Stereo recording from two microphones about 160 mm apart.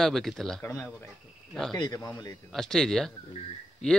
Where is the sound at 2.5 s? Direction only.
5° left (ahead or behind).